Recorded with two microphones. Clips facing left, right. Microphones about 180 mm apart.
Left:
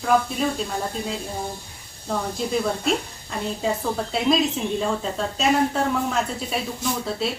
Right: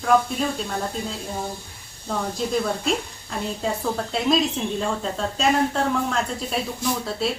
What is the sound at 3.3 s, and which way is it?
Speech, centre (ahead or behind).